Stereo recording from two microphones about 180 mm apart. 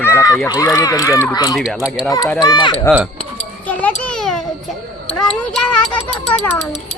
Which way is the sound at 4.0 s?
5° left (ahead or behind).